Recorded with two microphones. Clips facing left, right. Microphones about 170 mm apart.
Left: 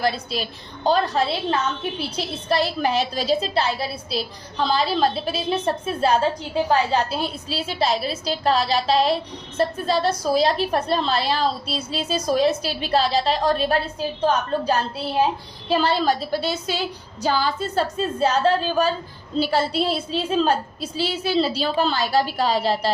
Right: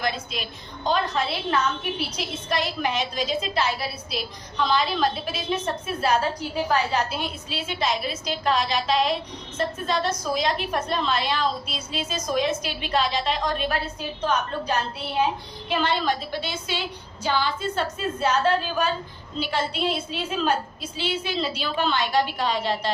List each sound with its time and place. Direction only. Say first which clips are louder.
0.0 s a woman's voice: left 5 dB; 35° left (ahead or behind)